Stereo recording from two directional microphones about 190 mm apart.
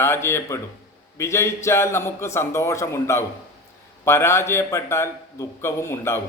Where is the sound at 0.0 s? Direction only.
15° left (ahead or behind).